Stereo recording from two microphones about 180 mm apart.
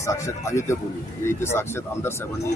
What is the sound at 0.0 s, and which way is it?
Speech, 15° left (ahead or behind).